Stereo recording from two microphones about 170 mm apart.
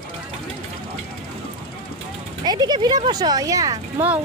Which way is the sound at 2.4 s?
25° right (ahead or behind).